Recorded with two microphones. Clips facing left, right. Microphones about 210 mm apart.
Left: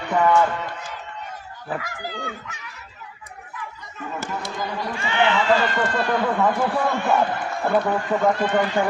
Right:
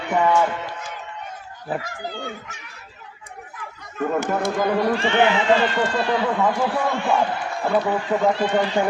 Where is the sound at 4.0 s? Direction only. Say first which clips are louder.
Right 9 dB; 55° right (ahead or behind).